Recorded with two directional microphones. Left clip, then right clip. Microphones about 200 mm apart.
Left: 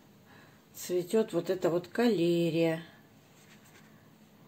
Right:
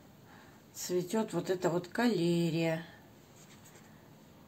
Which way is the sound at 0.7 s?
20° left (ahead or behind).